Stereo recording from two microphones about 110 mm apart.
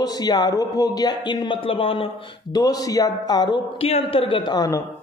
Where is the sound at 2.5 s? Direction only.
35° left (ahead or behind).